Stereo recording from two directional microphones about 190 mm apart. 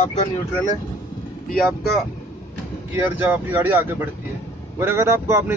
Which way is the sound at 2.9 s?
10° right (ahead or behind).